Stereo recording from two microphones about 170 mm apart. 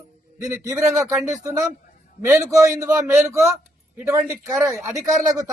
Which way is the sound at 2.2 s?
15° right (ahead or behind).